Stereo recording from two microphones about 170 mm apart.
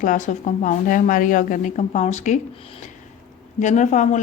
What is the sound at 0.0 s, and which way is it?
A woman's voice, 50° left (ahead or behind).